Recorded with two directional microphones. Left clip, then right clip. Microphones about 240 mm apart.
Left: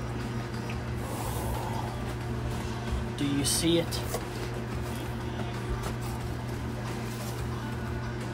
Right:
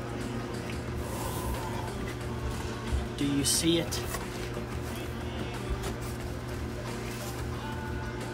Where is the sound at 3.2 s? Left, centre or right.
Centre.